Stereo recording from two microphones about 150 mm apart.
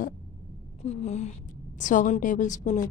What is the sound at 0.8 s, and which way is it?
A woman's voice, 45° left (ahead or behind).